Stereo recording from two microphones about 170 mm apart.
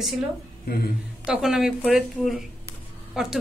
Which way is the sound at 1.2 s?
5° right (ahead or behind).